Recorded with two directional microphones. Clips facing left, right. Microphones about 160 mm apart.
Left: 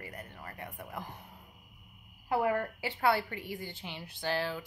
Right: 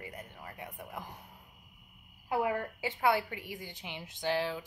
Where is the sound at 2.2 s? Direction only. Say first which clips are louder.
Left 2 dB; 10° right (ahead or behind).